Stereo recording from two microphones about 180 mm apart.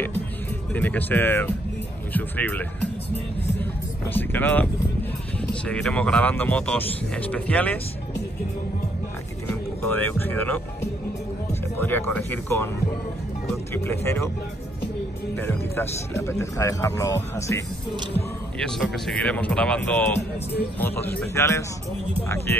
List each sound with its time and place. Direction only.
0.7 s speech: 10° left (ahead or behind)
4.1 s speech: 10° left (ahead or behind)
9.8 s speech: 10° left (ahead or behind)
13.8 s speech: 15° left (ahead or behind)
15.3 s speech: 10° left (ahead or behind)
18.6 s speech: 5° left (ahead or behind)